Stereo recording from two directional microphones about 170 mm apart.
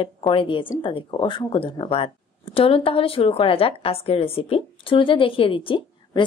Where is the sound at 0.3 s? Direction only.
30° left (ahead or behind).